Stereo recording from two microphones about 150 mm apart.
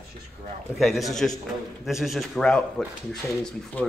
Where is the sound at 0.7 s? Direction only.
Centre (ahead or behind).